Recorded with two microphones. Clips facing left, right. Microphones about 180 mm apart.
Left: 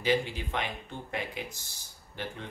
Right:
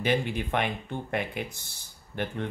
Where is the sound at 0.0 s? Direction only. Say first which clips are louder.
Right 2 dB; 60° right (ahead or behind).